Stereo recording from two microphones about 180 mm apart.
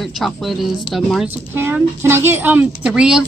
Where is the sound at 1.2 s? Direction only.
10° right (ahead or behind).